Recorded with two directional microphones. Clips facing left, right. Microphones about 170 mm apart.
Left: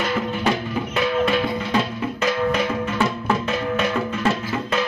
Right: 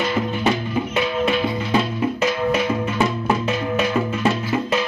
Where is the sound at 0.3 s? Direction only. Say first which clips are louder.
Right 1 dB; 5° right (ahead or behind).